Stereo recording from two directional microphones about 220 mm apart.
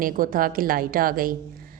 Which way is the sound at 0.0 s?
40° right (ahead or behind).